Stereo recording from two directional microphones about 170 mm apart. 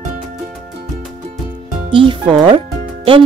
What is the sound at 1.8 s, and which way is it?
Speech, 30° right (ahead or behind).